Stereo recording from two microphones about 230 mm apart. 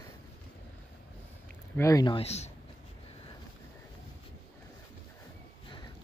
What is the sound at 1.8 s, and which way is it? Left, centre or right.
Speech, centre.